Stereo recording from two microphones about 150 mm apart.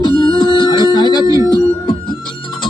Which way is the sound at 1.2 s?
25° right (ahead or behind).